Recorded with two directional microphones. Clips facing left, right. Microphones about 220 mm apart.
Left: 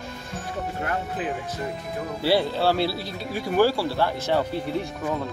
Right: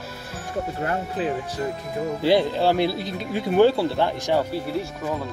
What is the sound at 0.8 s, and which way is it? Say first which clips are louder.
Speech: right 3 dB; 30° right (ahead or behind).